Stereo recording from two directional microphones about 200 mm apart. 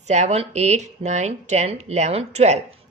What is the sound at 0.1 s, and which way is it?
Speech, 35° right (ahead or behind).